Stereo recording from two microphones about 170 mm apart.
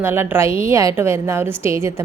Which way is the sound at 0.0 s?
15° right (ahead or behind).